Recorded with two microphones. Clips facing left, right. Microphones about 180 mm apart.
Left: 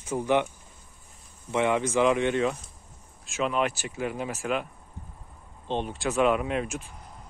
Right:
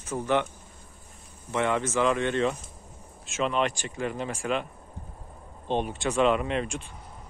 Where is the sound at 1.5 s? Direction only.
15° left (ahead or behind).